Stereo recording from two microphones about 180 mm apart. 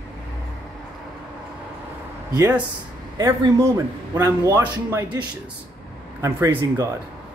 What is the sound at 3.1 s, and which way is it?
Speech, 20° right (ahead or behind).